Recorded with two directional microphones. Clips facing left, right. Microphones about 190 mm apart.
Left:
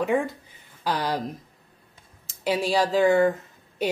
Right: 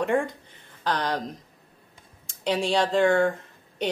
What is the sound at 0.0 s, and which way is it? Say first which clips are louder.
Speech: left 1 dB; 5° left (ahead or behind).